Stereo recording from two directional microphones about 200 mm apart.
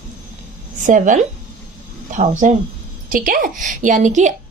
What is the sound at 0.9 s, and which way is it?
A woman's voice, 40° right (ahead or behind).